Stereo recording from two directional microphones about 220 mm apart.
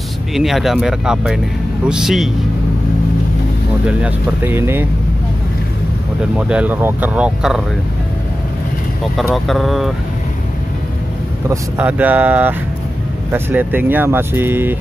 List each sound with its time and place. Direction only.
0.3 s speech: centre (ahead or behind)
3.8 s speech: 5° right (ahead or behind)
6.3 s speech: 5° right (ahead or behind)
9.1 s speech: centre (ahead or behind)
11.4 s speech: 10° right (ahead or behind)